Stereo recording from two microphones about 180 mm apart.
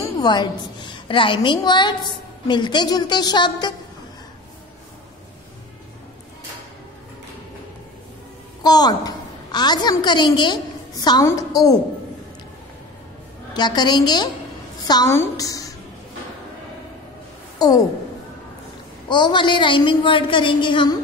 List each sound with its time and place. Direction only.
0.0 s a woman's voice: 25° left (ahead or behind)
8.6 s a woman's voice: 20° left (ahead or behind)
13.5 s a woman's voice: 25° left (ahead or behind)
17.6 s a woman's voice: 20° left (ahead or behind)
19.0 s a woman's voice: 25° left (ahead or behind)